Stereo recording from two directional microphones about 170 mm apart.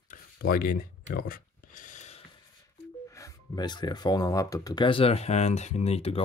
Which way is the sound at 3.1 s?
20° left (ahead or behind).